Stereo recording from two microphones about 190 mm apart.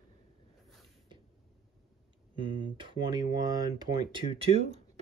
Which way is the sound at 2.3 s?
25° right (ahead or behind).